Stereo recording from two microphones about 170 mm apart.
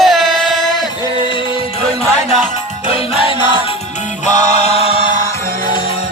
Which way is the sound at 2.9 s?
25° left (ahead or behind).